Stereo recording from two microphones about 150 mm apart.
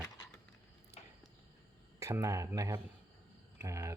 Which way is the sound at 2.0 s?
20° right (ahead or behind).